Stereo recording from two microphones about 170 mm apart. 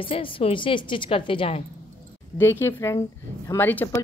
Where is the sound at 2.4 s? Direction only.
15° left (ahead or behind).